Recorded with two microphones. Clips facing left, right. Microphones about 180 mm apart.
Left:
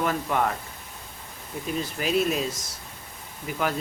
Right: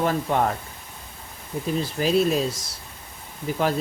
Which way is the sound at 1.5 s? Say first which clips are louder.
Right 4 dB; 30° right (ahead or behind).